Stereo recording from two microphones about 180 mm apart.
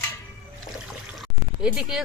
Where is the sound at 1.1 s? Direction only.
5° right (ahead or behind).